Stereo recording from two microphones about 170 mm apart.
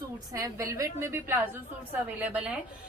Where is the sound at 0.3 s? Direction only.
20° right (ahead or behind).